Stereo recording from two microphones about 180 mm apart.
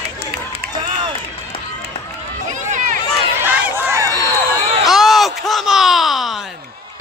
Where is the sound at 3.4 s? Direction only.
10° right (ahead or behind).